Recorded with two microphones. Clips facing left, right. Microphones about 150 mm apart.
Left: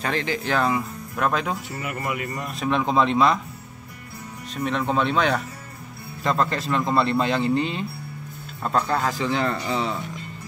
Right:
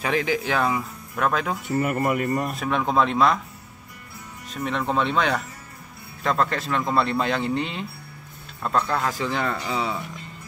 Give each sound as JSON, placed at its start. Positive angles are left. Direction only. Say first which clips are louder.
{"t": 0.0, "sound": "speech", "louder": "right 2 dB", "side_deg": -5}
{"t": 1.8, "sound": "speech", "louder": "right 6 dB", "side_deg": -50}
{"t": 2.5, "sound": "speech", "louder": "left 1 dB", "side_deg": 0}
{"t": 4.6, "sound": "speech", "louder": "left 1 dB", "side_deg": 0}